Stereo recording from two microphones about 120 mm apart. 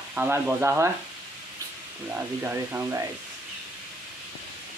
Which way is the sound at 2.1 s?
20° right (ahead or behind).